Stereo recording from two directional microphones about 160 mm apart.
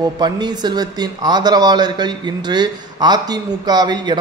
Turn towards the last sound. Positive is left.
turn(degrees=-25)  # may be behind; listen again after turning